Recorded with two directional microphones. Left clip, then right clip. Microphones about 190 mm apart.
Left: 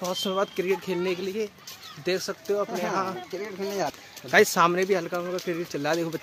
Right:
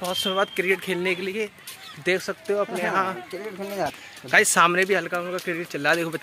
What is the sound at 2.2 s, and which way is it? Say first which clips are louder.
Speech: right 2 dB; 35° right (ahead or behind).